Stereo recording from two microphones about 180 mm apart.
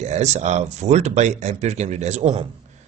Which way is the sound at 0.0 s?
40° right (ahead or behind).